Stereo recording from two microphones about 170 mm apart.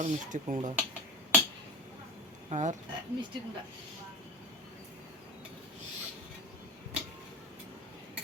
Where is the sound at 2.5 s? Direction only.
45° right (ahead or behind).